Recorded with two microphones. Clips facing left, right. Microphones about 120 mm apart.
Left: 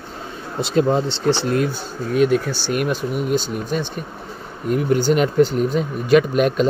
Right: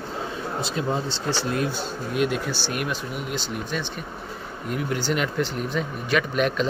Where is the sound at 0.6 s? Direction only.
70° left (ahead or behind).